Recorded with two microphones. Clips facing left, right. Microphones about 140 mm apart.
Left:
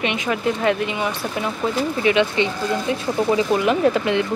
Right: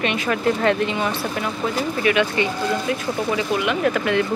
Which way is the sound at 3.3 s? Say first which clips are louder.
Left 4 dB; 35° left (ahead or behind).